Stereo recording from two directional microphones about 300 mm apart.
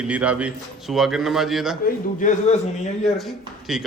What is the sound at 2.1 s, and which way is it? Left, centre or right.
Speech, left.